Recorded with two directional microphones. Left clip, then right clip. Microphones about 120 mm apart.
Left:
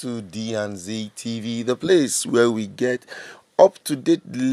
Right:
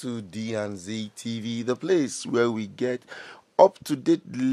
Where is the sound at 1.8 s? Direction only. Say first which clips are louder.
Left 7 dB; 20° left (ahead or behind).